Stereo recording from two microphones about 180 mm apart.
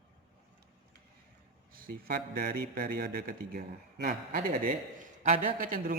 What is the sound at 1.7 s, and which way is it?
Speech, 55° right (ahead or behind).